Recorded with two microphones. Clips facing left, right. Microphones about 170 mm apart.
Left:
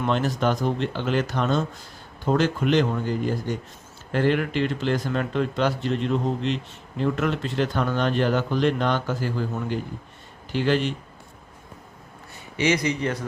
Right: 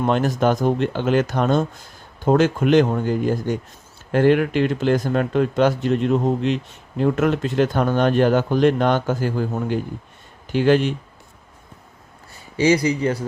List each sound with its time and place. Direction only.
0.0 s speech: 45° right (ahead or behind)
12.5 s speech: 35° right (ahead or behind)